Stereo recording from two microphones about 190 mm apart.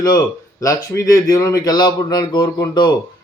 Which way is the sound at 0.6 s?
20° left (ahead or behind).